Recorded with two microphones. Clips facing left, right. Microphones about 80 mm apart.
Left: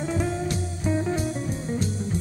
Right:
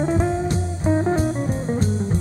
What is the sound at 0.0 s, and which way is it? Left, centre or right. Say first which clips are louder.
Music: right 6 dB; right.